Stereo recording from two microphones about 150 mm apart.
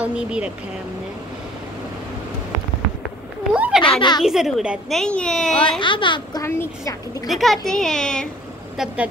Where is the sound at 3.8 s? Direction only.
35° left (ahead or behind).